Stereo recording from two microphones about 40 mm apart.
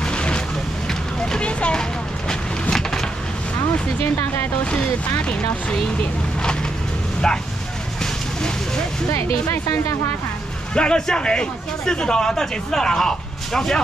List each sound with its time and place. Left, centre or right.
0.0 s vehicle: left
0.8 s a sound: centre
2.7 s a sound: centre
7.3 s speech: centre
8.0 s vehicle: centre
10.7 s speech: left